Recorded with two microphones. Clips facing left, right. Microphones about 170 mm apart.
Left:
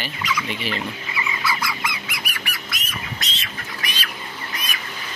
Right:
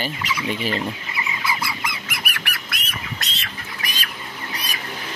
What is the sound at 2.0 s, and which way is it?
Squawk, 55° right (ahead or behind).